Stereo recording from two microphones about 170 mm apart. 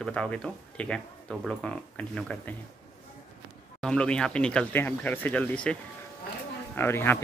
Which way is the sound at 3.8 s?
5° left (ahead or behind).